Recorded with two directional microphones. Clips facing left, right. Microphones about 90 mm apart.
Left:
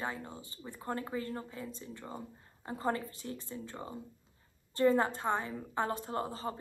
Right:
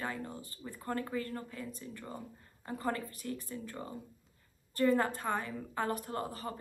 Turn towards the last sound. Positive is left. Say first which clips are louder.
# left 2 dB
turn(degrees=25)  # may be behind; listen again after turning